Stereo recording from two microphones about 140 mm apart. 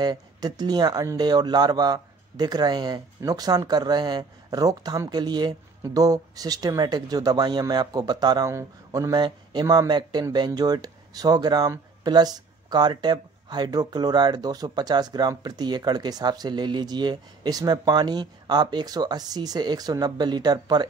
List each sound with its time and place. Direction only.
0.0 s speech: 30° right (ahead or behind)